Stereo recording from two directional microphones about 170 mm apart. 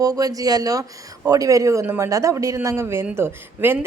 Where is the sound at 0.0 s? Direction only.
20° right (ahead or behind).